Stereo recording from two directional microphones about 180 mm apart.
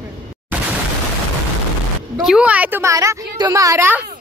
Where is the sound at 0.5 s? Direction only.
10° right (ahead or behind).